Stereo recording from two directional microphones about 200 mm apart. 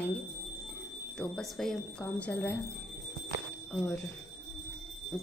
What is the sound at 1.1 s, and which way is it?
Speech, 5° left (ahead or behind).